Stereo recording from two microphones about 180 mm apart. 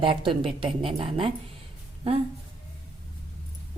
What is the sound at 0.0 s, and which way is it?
Speech, 30° right (ahead or behind).